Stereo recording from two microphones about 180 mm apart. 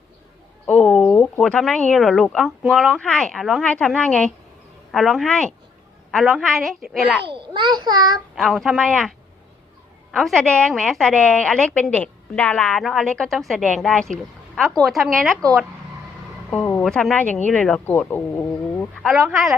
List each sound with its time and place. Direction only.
0.7 s a woman's voice: 5° left (ahead or behind)
7.3 s a child's voice: 25° right (ahead or behind)
8.4 s a woman's voice: centre (ahead or behind)
16.5 s a woman's voice: 10° left (ahead or behind)